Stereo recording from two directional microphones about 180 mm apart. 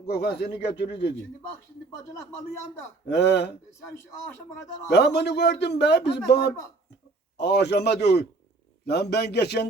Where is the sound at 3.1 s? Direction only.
70° left (ahead or behind).